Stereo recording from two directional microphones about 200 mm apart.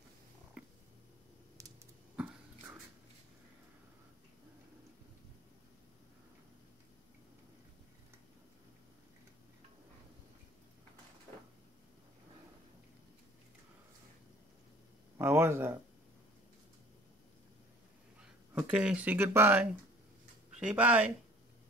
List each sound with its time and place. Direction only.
1.6 s typing: 15° right (ahead or behind)
2.1 s a sound: 5° right (ahead or behind)
15.1 s speech: 10° right (ahead or behind)
18.5 s speech: 5° right (ahead or behind)